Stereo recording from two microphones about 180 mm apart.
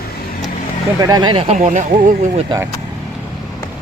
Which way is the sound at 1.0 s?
20° right (ahead or behind).